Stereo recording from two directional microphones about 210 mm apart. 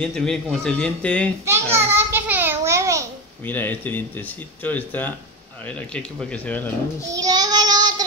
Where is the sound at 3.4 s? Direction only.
10° left (ahead or behind).